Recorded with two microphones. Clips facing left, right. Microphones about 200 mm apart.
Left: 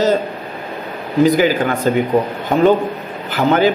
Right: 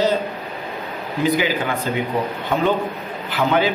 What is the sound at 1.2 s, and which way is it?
Speech, 45° left (ahead or behind).